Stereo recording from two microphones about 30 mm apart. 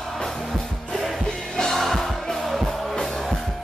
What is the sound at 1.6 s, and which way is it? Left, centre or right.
Music, centre.